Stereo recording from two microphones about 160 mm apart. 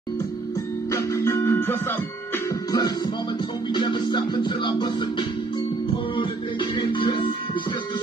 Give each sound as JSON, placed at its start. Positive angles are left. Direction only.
{"t": 0.9, "sound": "music", "side_deg": 15}
{"t": 3.7, "sound": "music", "side_deg": 30}